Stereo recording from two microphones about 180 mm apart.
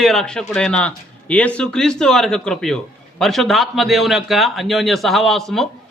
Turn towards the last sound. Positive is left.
turn(degrees=0)  # may be behind; listen again after turning